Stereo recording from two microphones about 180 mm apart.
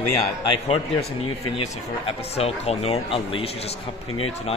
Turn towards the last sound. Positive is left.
turn(degrees=30)  # may be behind; listen again after turning